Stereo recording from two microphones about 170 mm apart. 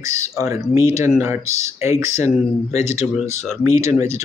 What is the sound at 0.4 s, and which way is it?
Speech, 20° right (ahead or behind).